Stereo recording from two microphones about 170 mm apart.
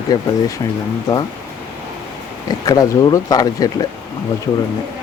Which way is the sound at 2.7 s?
20° left (ahead or behind).